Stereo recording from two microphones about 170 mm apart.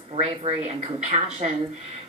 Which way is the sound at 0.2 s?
40° right (ahead or behind).